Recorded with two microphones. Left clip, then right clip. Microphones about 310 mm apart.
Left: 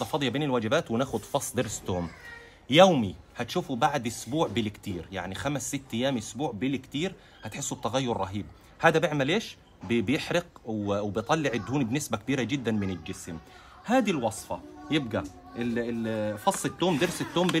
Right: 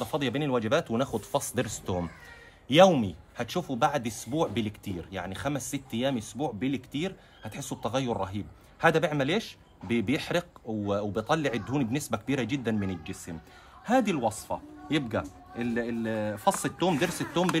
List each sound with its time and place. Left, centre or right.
0.0 s speech: centre